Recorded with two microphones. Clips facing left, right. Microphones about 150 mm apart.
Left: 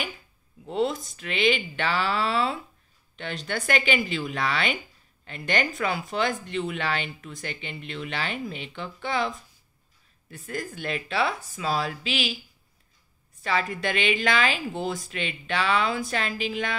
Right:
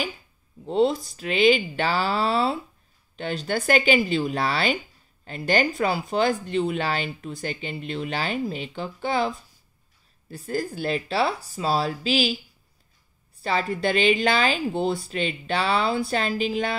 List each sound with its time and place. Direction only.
0.7 s speech: 30° right (ahead or behind)
10.3 s speech: 35° right (ahead or behind)
13.4 s speech: 35° right (ahead or behind)